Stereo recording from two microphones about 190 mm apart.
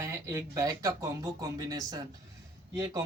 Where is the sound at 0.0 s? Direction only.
15° right (ahead or behind).